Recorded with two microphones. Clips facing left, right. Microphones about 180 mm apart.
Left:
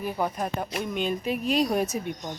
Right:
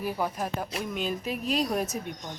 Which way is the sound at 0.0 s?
5° right (ahead or behind).